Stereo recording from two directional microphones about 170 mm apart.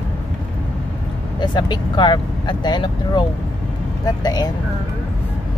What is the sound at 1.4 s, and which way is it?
Speech, 25° left (ahead or behind).